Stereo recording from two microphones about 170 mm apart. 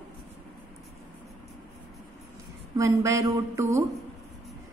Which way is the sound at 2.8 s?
20° right (ahead or behind).